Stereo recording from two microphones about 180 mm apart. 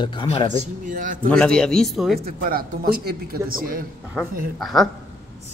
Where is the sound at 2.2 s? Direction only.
55° right (ahead or behind).